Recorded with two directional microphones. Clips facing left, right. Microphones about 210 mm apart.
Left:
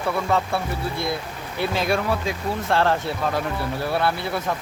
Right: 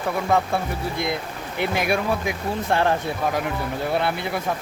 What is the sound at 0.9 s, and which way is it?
A man's voice, 20° right (ahead or behind).